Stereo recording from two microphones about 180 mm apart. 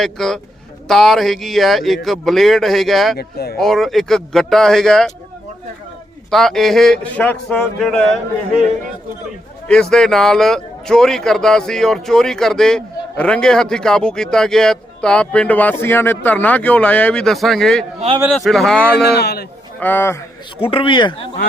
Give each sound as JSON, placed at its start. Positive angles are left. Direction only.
{"t": 0.0, "sound": "speech", "side_deg": 0}
{"t": 3.2, "sound": "speech", "side_deg": 60}
{"t": 3.6, "sound": "speech", "side_deg": 0}
{"t": 6.3, "sound": "speech", "side_deg": 0}
{"t": 9.6, "sound": "speech", "side_deg": 5}
{"t": 19.0, "sound": "speech", "side_deg": 65}
{"t": 19.8, "sound": "speech", "side_deg": 10}
{"t": 20.6, "sound": "speech", "side_deg": 30}